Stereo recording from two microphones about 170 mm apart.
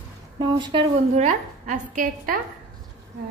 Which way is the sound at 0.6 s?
30° right (ahead or behind).